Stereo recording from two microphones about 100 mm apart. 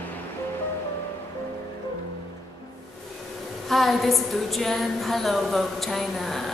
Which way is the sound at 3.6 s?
Centre (ahead or behind).